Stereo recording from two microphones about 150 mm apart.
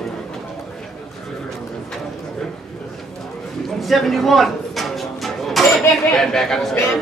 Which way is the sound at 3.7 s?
Centre (ahead or behind).